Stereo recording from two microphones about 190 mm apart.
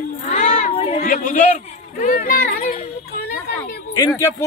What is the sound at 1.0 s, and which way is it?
A man's voice, 45° left (ahead or behind).